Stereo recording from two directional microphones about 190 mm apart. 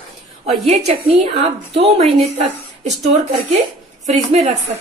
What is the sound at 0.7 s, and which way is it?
A woman's voice, 35° right (ahead or behind).